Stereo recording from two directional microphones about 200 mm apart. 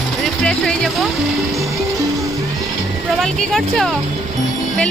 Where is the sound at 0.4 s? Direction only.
Centre (ahead or behind).